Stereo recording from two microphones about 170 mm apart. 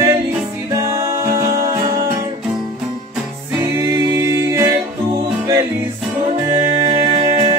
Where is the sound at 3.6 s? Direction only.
20° right (ahead or behind).